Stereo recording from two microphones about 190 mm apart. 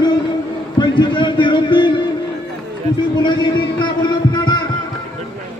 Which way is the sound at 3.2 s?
25° left (ahead or behind).